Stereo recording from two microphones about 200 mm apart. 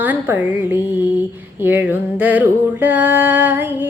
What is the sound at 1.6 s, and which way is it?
Music, 10° right (ahead or behind).